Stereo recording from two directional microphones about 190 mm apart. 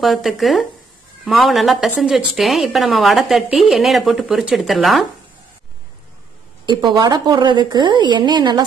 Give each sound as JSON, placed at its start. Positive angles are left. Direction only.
{"t": 0.0, "sound": "a woman's voice", "side_deg": 0}
{"t": 6.6, "sound": "a woman's voice", "side_deg": -25}